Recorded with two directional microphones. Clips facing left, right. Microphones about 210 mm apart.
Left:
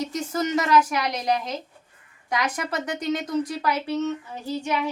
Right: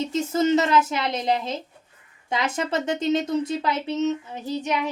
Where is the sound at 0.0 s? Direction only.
25° right (ahead or behind).